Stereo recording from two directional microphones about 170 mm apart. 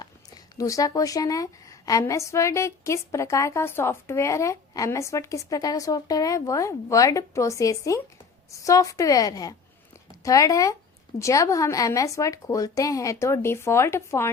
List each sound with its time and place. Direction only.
0.5 s a woman's voice: 20° left (ahead or behind)